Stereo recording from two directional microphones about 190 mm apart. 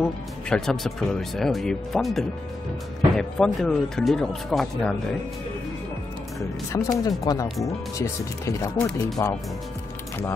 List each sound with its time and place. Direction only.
0.0 s speech: 5° left (ahead or behind)
6.7 s speech: 20° left (ahead or behind)
8.8 s speech: 5° left (ahead or behind)